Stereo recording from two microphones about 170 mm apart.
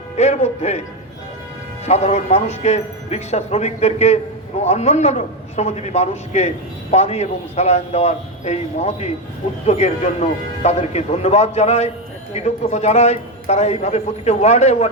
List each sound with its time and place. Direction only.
0.2 s a man's voice: 40° left (ahead or behind)
1.9 s a man's voice: 40° left (ahead or behind)